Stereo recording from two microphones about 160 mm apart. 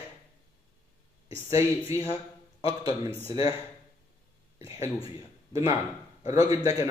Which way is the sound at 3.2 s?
35° left (ahead or behind).